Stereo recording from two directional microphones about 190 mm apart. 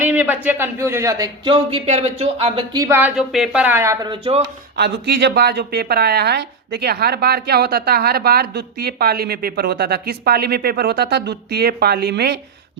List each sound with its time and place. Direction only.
0.0 s speech: 10° right (ahead or behind); by 2.6 s 30° right (ahead or behind)
2.7 s speech: 15° right (ahead or behind)
3.2 s speech: centre (ahead or behind)
4.1 s speech: 30° right (ahead or behind)
4.8 s a woman's voice: 60° right (ahead or behind)